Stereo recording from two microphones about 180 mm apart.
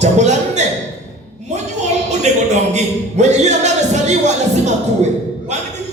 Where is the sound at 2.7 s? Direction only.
40° right (ahead or behind).